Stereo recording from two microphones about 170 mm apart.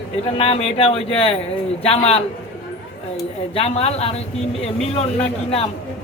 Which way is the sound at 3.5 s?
35° left (ahead or behind).